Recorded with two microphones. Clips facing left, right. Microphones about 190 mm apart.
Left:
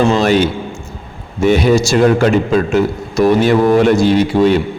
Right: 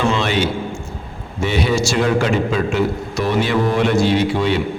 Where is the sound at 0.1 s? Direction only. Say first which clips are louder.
Left 7 dB; 40° left (ahead or behind).